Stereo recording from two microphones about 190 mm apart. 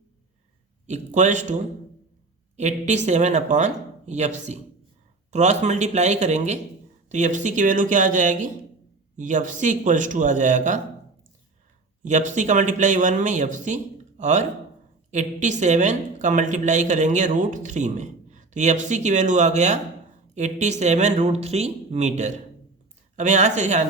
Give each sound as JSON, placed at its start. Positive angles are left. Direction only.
{"t": 0.9, "sound": "a woman's voice", "side_deg": -40}
{"t": 2.6, "sound": "a woman's voice", "side_deg": -35}
{"t": 12.0, "sound": "a woman's voice", "side_deg": -40}